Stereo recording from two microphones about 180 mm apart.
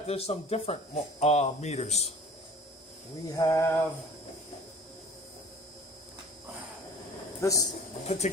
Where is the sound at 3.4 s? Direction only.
15° left (ahead or behind).